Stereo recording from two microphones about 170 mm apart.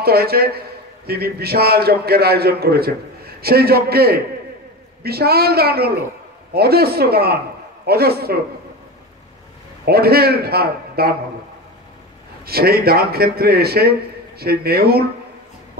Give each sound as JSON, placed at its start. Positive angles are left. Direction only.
{"t": 0.0, "sound": "a man's voice", "side_deg": -65}
{"t": 9.8, "sound": "a man's voice", "side_deg": -65}
{"t": 12.4, "sound": "a man's voice", "side_deg": -65}